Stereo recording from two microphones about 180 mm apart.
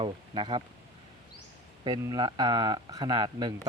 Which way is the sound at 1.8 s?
25° right (ahead or behind).